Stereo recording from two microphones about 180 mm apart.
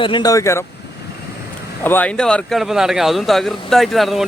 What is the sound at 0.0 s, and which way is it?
Speech, 25° left (ahead or behind).